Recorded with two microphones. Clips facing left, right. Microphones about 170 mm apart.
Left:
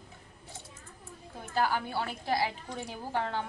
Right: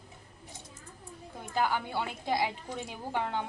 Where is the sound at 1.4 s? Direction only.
15° right (ahead or behind).